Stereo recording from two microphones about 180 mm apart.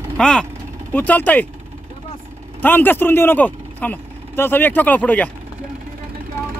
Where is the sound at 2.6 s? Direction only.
10° left (ahead or behind).